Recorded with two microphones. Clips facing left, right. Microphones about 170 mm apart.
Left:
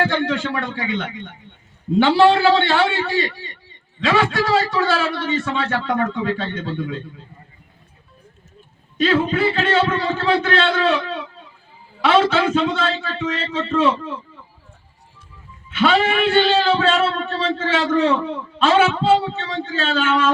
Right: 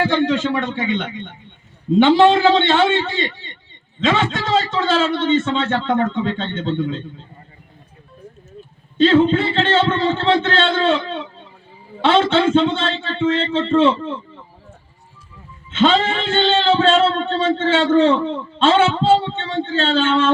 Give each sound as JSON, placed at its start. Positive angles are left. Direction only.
{"t": 0.0, "sound": "speech", "side_deg": -20}
{"t": 9.0, "sound": "speech", "side_deg": -25}
{"t": 15.7, "sound": "speech", "side_deg": -25}